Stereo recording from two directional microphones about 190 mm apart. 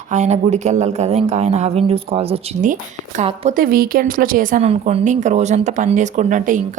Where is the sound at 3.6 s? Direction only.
50° right (ahead or behind).